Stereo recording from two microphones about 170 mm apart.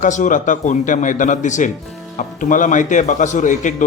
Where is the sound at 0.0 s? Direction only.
50° left (ahead or behind).